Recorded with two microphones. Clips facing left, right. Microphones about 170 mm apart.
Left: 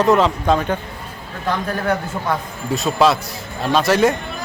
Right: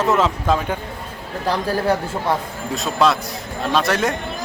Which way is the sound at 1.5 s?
30° right (ahead or behind).